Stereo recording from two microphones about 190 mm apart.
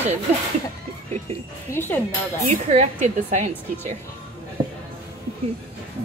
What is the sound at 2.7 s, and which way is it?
Speech, 35° right (ahead or behind).